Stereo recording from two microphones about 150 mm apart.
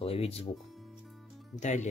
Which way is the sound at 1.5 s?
55° left (ahead or behind).